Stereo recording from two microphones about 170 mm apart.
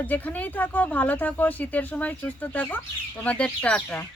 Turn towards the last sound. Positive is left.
turn(degrees=10)  # may be behind; listen again after turning